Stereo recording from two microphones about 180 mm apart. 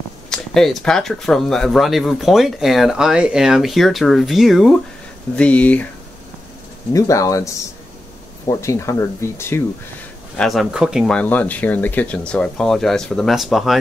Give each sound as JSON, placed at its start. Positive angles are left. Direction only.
{"t": 0.3, "sound": "speech", "side_deg": 5}
{"t": 6.9, "sound": "speech", "side_deg": 15}
{"t": 10.3, "sound": "speech", "side_deg": 0}